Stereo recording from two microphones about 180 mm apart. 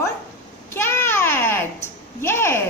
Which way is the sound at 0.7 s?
15° left (ahead or behind).